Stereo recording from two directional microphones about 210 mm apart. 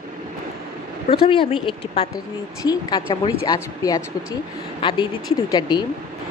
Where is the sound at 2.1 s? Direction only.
20° left (ahead or behind).